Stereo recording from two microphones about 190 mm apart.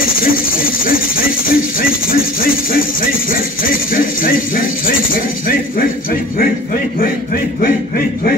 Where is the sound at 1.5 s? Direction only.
50° left (ahead or behind).